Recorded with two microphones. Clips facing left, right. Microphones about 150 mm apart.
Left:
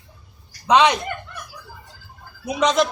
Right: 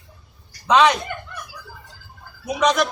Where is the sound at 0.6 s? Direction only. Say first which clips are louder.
Even; 20° left (ahead or behind).